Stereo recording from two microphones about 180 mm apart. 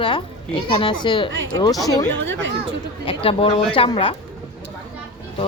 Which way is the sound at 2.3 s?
90° right.